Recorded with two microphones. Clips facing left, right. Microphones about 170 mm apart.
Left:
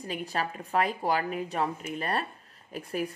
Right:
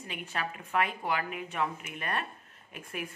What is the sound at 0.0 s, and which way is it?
A woman's voice, 35° left (ahead or behind).